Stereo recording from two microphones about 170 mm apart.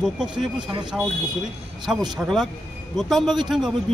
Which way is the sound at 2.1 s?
Centre (ahead or behind).